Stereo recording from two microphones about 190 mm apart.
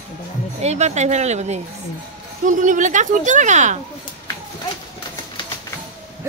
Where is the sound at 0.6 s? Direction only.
35° right (ahead or behind).